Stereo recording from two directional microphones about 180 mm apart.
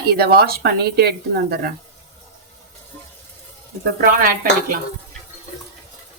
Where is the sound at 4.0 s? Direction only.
55° right (ahead or behind).